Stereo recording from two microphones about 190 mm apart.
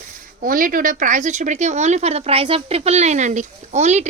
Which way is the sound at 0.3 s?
45° right (ahead or behind).